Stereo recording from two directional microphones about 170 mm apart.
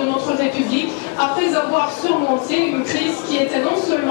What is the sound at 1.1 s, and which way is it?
Speech, 15° left (ahead or behind).